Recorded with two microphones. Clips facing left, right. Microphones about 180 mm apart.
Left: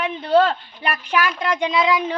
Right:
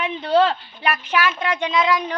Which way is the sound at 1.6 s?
15° left (ahead or behind).